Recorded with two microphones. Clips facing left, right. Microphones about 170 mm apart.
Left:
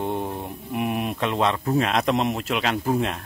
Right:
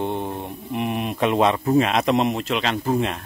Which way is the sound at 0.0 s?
5° left (ahead or behind).